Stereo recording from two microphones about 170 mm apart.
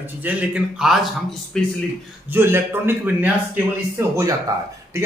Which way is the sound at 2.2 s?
10° right (ahead or behind).